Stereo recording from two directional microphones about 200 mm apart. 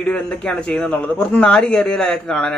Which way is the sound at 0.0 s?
5° left (ahead or behind).